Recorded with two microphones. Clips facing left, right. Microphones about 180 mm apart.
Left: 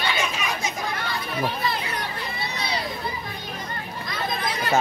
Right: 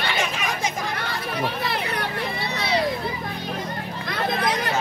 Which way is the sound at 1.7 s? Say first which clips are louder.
Right 2 dB; 70° right (ahead or behind).